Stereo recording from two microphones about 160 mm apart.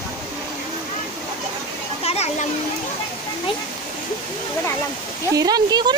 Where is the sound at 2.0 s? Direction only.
40° left (ahead or behind).